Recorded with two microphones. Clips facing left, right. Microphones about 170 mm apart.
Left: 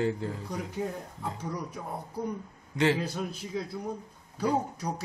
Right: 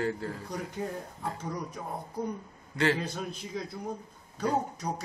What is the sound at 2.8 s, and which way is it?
Speech, 10° left (ahead or behind).